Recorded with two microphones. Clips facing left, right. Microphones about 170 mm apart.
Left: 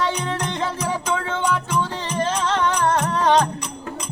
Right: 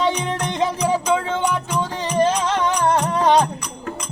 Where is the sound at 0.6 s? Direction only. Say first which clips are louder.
Right 5 dB; 15° right (ahead or behind).